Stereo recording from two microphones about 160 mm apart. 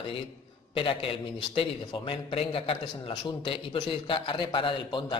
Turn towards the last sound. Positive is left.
turn(degrees=30)  # may be behind; listen again after turning